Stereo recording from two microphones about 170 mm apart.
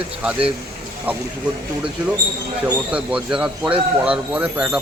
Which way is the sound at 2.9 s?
5° right (ahead or behind).